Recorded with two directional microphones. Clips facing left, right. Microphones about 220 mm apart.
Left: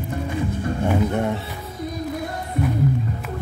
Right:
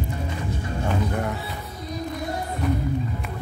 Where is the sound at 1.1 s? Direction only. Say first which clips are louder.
Left 5 dB; 25° left (ahead or behind).